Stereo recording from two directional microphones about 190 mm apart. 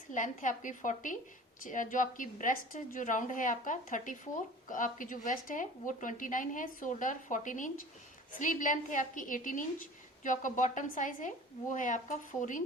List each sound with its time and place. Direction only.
0.1 s a woman's voice: 40° left (ahead or behind)